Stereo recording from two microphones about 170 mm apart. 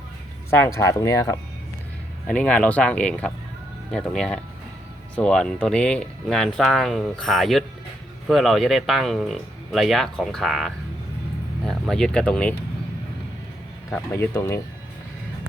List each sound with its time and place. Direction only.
0.5 s speech: 15° left (ahead or behind)
2.2 s speech: 5° left (ahead or behind)
13.9 s speech: 15° left (ahead or behind)